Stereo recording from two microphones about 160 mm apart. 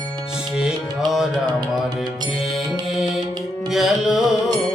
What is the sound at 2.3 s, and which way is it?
Music, centre (ahead or behind).